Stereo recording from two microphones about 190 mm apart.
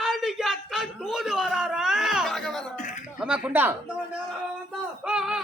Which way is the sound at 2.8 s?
40° left (ahead or behind).